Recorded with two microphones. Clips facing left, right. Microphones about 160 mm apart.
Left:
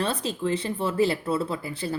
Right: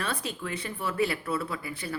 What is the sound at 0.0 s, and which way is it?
Speech, 30° left (ahead or behind).